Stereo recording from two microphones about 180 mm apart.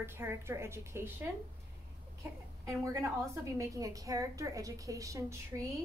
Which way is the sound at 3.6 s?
20° right (ahead or behind).